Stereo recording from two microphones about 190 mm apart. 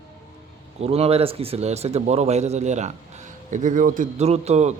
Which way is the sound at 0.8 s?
30° right (ahead or behind).